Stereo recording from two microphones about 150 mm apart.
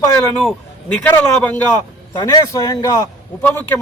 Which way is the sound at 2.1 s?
25° left (ahead or behind).